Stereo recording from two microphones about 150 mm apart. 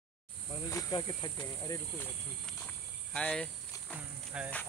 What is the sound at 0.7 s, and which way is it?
Speech, 20° left (ahead or behind).